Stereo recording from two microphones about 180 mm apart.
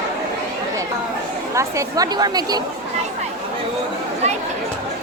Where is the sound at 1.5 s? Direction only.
15° right (ahead or behind).